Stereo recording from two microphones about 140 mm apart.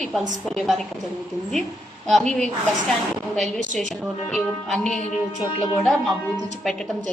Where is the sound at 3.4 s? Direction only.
65° right (ahead or behind).